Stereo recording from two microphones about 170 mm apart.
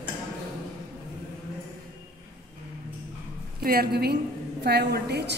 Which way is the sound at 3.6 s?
65° right (ahead or behind).